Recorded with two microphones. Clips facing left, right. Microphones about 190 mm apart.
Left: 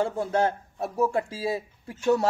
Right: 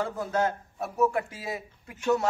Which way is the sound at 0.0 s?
30° left (ahead or behind).